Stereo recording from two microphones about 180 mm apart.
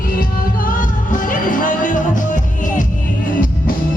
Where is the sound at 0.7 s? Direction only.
45° left (ahead or behind).